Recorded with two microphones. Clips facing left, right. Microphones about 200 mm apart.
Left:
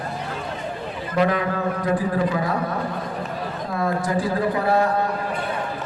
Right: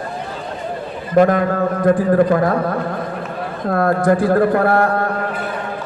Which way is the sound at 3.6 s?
60° right (ahead or behind).